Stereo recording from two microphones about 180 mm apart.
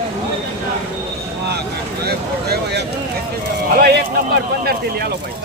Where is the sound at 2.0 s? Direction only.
65° right (ahead or behind).